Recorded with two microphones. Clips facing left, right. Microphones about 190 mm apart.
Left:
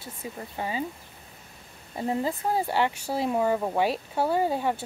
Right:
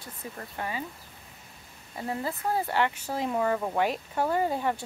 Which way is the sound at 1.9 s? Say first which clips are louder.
Left 5 dB; 25° left (ahead or behind).